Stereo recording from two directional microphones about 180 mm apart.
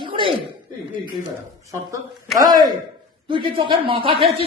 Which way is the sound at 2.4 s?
20° right (ahead or behind).